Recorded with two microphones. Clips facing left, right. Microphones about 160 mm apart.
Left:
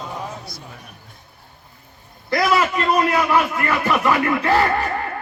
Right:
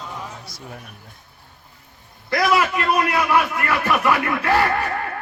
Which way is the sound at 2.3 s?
Centre (ahead or behind).